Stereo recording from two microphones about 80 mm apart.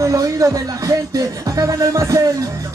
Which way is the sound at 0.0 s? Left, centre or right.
Right.